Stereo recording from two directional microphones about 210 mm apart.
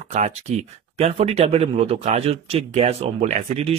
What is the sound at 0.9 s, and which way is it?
Speech, 30° right (ahead or behind).